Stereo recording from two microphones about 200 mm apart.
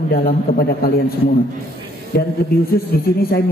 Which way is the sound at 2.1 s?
50° left (ahead or behind).